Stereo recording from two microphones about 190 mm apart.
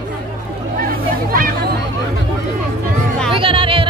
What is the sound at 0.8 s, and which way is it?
Hubbub, 45° right (ahead or behind).